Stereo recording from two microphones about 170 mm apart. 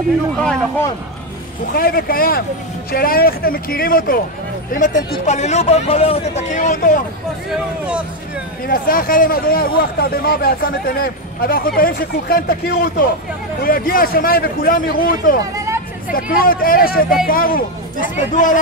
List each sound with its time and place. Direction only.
1.7 s speech: 60° left (ahead or behind)
4.7 s speech: 50° left (ahead or behind)
7.5 s speech: 5° right (ahead or behind)
8.6 s speech: 55° left (ahead or behind)
15.5 s hubbub: 20° right (ahead or behind)
16.1 s speech: 55° left (ahead or behind)